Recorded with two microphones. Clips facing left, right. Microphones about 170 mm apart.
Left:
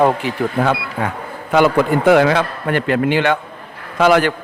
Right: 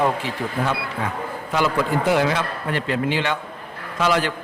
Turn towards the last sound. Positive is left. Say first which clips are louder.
# left 7 dB
turn(degrees=60)  # may be behind; listen again after turning